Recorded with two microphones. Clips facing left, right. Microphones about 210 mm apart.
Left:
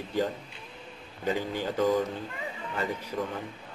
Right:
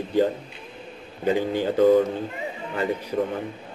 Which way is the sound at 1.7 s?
55° right (ahead or behind).